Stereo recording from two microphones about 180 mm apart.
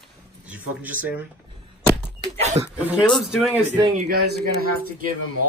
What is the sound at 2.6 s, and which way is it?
Speech, 10° right (ahead or behind).